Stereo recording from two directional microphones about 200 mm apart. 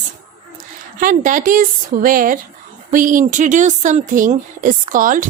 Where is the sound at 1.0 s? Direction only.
40° right (ahead or behind).